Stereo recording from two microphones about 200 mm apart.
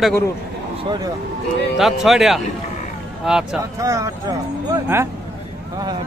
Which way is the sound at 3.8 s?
15° right (ahead or behind).